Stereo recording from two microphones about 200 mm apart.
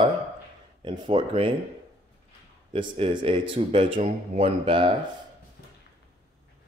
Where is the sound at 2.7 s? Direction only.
25° right (ahead or behind).